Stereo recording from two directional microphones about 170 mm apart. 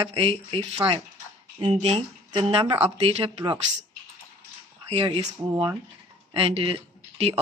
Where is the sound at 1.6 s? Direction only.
35° right (ahead or behind).